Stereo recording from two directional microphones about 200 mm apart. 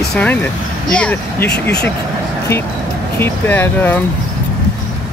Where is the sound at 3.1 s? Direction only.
10° left (ahead or behind).